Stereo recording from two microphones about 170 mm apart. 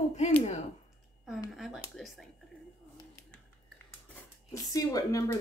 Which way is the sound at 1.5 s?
Centre (ahead or behind).